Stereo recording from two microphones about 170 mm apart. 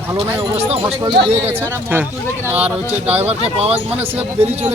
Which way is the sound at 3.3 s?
40° right (ahead or behind).